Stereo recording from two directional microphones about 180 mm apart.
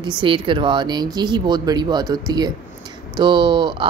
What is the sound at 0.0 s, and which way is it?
A woman's voice, 30° right (ahead or behind).